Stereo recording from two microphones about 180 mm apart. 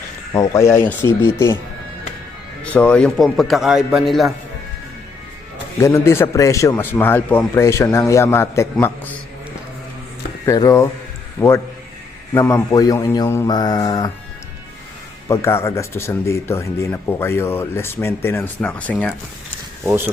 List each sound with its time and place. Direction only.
0.3 s speech: 15° left (ahead or behind)
2.6 s a man's voice: 5° left (ahead or behind)
5.8 s speech: 15° left (ahead or behind)
10.4 s speech: 20° left (ahead or behind)
15.3 s speech: 15° left (ahead or behind)
19.8 s speech: 15° right (ahead or behind)